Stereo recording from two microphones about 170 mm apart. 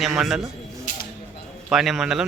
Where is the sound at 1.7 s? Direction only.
Centre (ahead or behind).